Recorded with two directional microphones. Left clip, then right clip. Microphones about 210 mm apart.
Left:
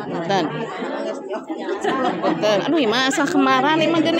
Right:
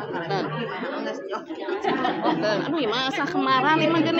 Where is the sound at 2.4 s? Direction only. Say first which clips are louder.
Left 6 dB; 55° left (ahead or behind).